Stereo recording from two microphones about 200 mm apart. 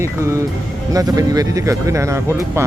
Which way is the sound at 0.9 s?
15° right (ahead or behind).